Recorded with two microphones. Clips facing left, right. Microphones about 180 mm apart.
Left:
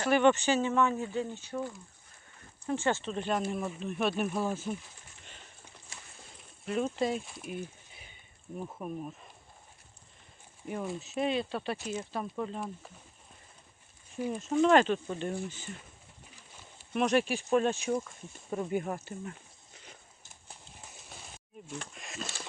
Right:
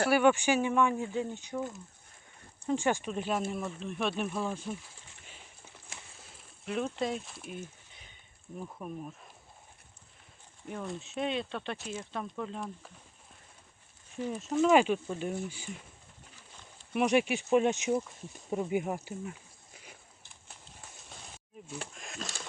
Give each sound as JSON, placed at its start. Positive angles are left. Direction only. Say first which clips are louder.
{"t": 0.1, "sound": "speech", "louder": "left 3 dB", "side_deg": -10}
{"t": 2.6, "sound": "speech", "louder": "right 1 dB", "side_deg": -15}
{"t": 5.2, "sound": "pigeon", "louder": "left 1 dB", "side_deg": -5}
{"t": 6.3, "sound": "a sound", "louder": "left 2 dB", "side_deg": 0}
{"t": 8.5, "sound": "speech", "louder": "left 2 dB", "side_deg": 5}
{"t": 10.7, "sound": "speech", "louder": "left 3 dB", "side_deg": 5}
{"t": 14.3, "sound": "speech", "louder": "even", "side_deg": 0}
{"t": 16.9, "sound": "speech", "louder": "right 1 dB", "side_deg": -10}
{"t": 21.7, "sound": "speech", "louder": "even", "side_deg": -5}